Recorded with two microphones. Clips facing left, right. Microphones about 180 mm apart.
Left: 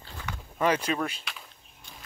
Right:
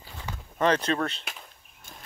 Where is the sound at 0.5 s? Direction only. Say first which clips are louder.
Right 2 dB; 10° left (ahead or behind).